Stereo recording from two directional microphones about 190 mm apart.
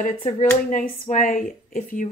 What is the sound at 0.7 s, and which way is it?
Speech, 40° left (ahead or behind).